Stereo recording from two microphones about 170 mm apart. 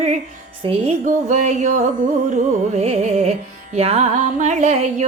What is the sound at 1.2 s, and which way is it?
Carnatic music, 45° right (ahead or behind).